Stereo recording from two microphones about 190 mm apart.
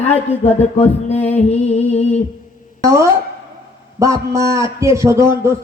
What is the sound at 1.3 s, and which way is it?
Speech, 35° left (ahead or behind).